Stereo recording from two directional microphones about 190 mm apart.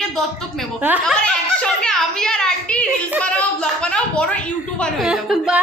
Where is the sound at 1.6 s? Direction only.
5° left (ahead or behind).